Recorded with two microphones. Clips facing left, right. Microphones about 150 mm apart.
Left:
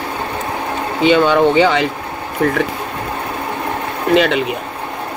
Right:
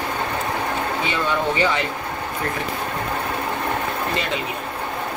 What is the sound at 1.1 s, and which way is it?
Speech, 90° left.